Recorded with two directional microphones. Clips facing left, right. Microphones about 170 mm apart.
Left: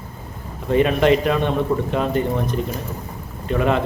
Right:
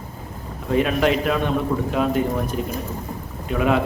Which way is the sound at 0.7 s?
Centre (ahead or behind).